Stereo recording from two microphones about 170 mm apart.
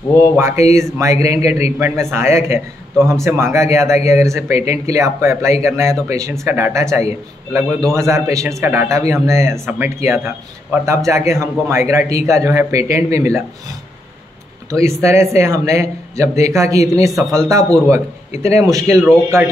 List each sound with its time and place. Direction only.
0.4 s a man's voice: 15° right (ahead or behind)
14.8 s a man's voice: 15° right (ahead or behind)